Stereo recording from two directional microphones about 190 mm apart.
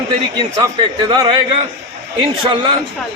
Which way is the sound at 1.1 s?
25° right (ahead or behind).